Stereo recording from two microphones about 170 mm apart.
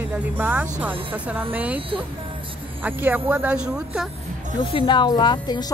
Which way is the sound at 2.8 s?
10° right (ahead or behind).